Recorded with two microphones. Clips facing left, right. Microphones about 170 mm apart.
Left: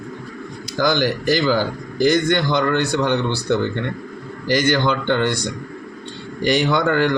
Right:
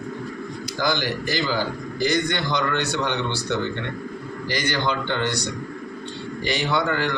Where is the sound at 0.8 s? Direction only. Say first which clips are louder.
Left 6 dB; 55° left (ahead or behind).